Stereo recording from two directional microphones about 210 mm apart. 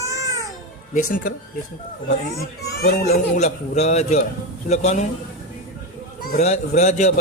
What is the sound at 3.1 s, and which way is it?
Speech, 30° left (ahead or behind).